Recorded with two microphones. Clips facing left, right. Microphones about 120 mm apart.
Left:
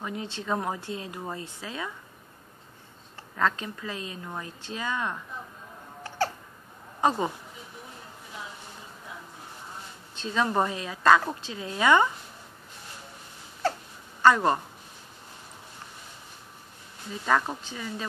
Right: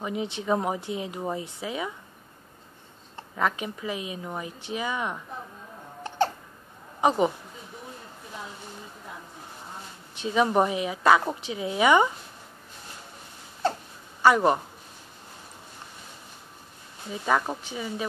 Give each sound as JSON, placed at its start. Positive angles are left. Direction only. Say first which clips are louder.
{"t": 0.0, "sound": "a woman's voice", "louder": "right 4 dB", "side_deg": -15}
{"t": 3.3, "sound": "a woman's voice", "louder": "even", "side_deg": -15}
{"t": 6.0, "sound": "a sound", "louder": "right 3 dB", "side_deg": -20}
{"t": 7.0, "sound": "speech", "louder": "right 3 dB", "side_deg": -15}
{"t": 10.1, "sound": "a woman's voice", "louder": "right 4 dB", "side_deg": -15}
{"t": 13.6, "sound": "a sound", "louder": "right 1 dB", "side_deg": -20}
{"t": 14.2, "sound": "a woman's voice", "louder": "right 1 dB", "side_deg": -15}
{"t": 17.3, "sound": "a woman's voice", "louder": "even", "side_deg": -10}